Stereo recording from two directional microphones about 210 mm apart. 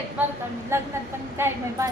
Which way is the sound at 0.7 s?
10° right (ahead or behind).